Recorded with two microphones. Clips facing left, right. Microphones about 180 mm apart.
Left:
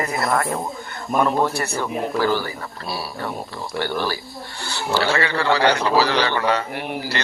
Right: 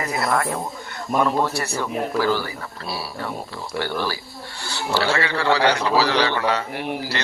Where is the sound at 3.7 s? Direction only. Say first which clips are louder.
Left 1 dB; 50° left (ahead or behind).